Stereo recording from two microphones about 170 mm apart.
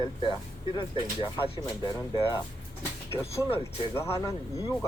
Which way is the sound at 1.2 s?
25° left (ahead or behind).